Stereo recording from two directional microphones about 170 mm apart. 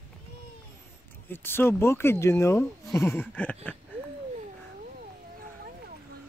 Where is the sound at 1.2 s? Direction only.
15° left (ahead or behind).